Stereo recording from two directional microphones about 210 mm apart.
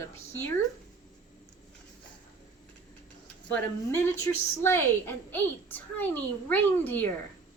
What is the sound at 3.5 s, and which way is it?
A woman's voice, 10° left (ahead or behind).